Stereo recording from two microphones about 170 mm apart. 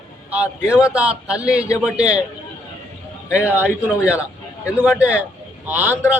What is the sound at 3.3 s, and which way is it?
Speech, 10° right (ahead or behind).